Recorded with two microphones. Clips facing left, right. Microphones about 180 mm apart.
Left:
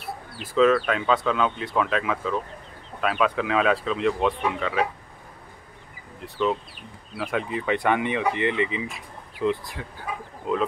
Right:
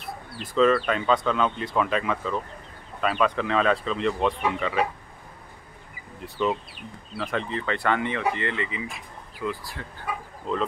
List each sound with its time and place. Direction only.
0.0 s speech: 5° left (ahead or behind)
6.2 s speech: centre (ahead or behind)
7.2 s speech: 10° left (ahead or behind)
10.4 s speech: 5° left (ahead or behind)